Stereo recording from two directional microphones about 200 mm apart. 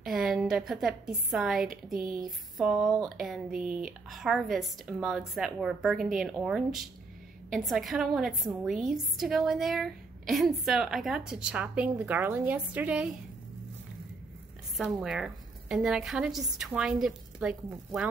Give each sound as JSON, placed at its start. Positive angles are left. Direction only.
{"t": 0.0, "sound": "a woman's voice", "side_deg": 0}
{"t": 2.0, "sound": "speech", "side_deg": -45}
{"t": 2.2, "sound": "a woman's voice", "side_deg": 0}
{"t": 14.8, "sound": "a woman's voice", "side_deg": 0}